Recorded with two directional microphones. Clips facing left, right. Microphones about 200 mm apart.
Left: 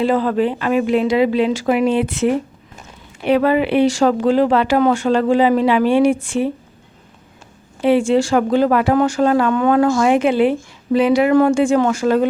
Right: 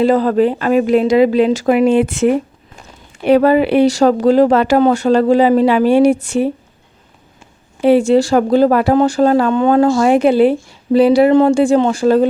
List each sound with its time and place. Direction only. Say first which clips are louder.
0.0 s speech: right 4 dB; 40° right (ahead or behind)
7.9 s speech: right 4 dB; 40° right (ahead or behind)